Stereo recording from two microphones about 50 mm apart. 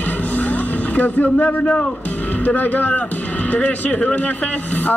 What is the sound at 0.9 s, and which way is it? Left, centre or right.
Speech, left.